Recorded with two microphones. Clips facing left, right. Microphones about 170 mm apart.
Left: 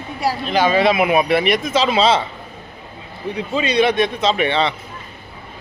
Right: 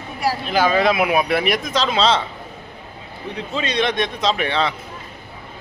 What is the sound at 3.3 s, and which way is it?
Speech, 10° left (ahead or behind).